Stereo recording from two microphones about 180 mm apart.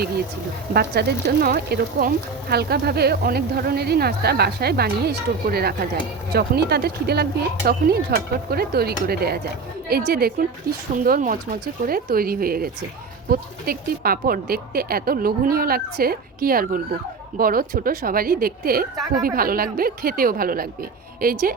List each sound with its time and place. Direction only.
0.7 s speech: 60° right (ahead or behind)